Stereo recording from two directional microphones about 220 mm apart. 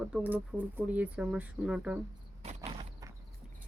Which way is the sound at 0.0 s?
5° right (ahead or behind).